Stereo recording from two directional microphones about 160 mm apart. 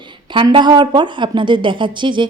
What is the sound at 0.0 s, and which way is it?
A woman's voice, 30° right (ahead or behind).